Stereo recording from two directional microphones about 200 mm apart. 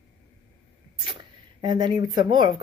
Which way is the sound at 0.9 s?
25° right (ahead or behind).